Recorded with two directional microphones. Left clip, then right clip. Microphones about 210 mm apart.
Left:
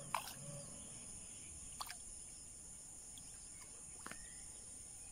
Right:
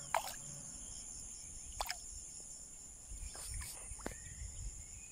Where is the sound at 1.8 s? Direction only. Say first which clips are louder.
Right 8 dB; 35° right (ahead or behind).